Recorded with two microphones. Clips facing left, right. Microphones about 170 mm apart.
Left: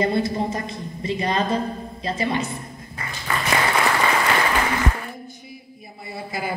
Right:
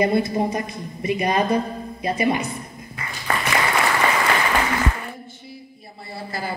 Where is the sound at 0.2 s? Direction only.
20° right (ahead or behind).